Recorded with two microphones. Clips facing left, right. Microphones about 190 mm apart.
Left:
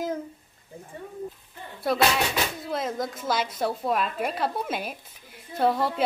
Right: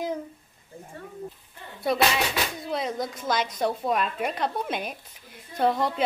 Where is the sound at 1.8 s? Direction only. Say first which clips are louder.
Even; centre (ahead or behind).